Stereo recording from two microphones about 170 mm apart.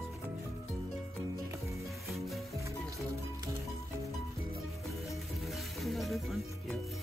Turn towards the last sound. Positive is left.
turn(degrees=0)  # may be behind; listen again after turning